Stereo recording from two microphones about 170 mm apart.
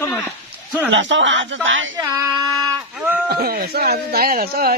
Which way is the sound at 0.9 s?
90° right.